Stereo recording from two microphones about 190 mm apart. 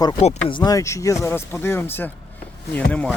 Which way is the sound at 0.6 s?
20° left (ahead or behind).